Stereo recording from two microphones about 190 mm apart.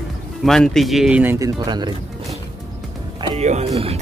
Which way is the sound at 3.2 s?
35° right (ahead or behind).